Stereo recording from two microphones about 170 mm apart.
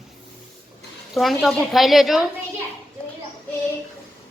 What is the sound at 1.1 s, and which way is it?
Speech, centre (ahead or behind).